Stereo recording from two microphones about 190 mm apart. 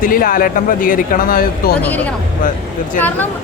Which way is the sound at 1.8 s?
10° left (ahead or behind).